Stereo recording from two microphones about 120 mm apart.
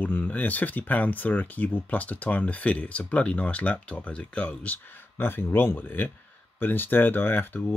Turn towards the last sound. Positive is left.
turn(degrees=15)  # may be behind; listen again after turning